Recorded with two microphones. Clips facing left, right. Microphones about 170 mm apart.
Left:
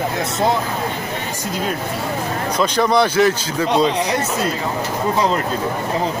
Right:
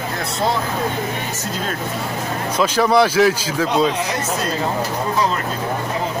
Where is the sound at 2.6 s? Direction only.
5° right (ahead or behind).